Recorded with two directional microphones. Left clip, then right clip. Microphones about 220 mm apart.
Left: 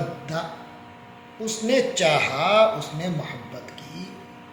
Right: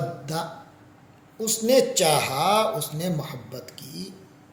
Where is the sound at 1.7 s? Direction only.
50° right (ahead or behind).